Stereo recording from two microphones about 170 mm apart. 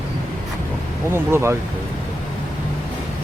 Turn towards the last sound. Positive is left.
turn(degrees=-15)  # may be behind; listen again after turning